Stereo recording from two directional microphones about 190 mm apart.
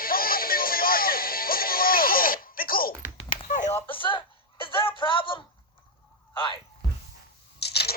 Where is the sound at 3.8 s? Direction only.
25° left (ahead or behind).